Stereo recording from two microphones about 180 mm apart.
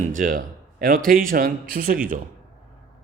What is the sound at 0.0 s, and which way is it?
A man's voice, 45° right (ahead or behind).